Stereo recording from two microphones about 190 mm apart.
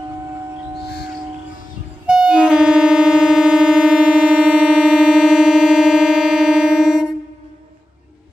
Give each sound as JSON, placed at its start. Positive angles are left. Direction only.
{"t": 2.0, "sound": "music", "side_deg": -5}